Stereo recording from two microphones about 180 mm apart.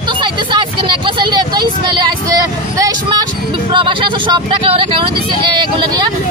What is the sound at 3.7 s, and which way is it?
Speech, 30° right (ahead or behind).